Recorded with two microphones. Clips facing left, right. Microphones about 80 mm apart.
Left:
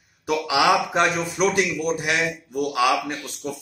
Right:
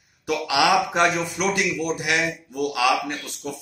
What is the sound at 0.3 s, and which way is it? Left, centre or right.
A man's voice, left.